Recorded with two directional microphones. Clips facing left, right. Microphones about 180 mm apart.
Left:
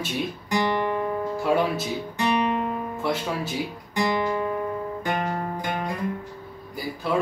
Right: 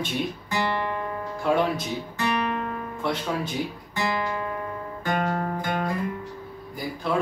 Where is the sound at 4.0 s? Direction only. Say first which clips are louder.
Left 4 dB; 10° left (ahead or behind).